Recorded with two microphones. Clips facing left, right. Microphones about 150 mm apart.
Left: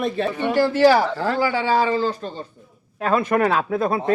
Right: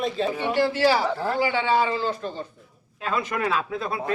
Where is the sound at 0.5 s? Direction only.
45° left (ahead or behind).